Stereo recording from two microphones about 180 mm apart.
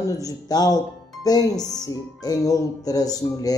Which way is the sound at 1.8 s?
20° left (ahead or behind).